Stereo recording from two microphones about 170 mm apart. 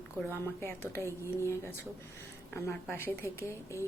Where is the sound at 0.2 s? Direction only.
10° left (ahead or behind).